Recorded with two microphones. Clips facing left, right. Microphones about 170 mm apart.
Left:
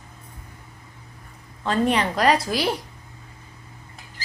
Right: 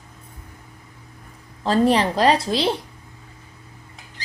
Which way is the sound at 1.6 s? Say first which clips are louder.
Right 4 dB; 35° right (ahead or behind).